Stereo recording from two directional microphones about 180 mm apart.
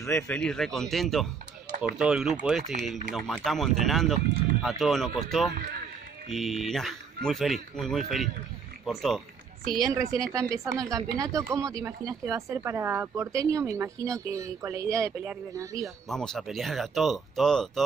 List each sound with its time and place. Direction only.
0.1 s speech: 5° left (ahead or behind)
9.8 s a woman's voice: 20° right (ahead or behind)
15.8 s speech: centre (ahead or behind)